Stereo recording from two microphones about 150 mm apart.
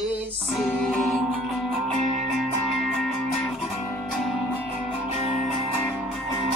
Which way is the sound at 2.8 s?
5° left (ahead or behind).